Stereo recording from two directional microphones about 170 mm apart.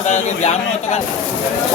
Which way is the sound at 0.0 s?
45° left (ahead or behind).